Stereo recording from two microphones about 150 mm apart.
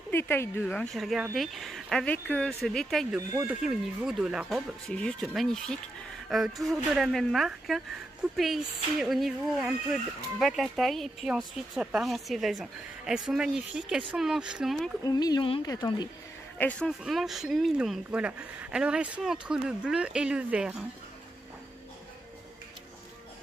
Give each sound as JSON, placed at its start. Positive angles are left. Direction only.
{"t": 0.1, "sound": "a woman's voice", "side_deg": 15}
{"t": 15.0, "sound": "speech", "side_deg": 25}
{"t": 16.5, "sound": "a woman's voice", "side_deg": 10}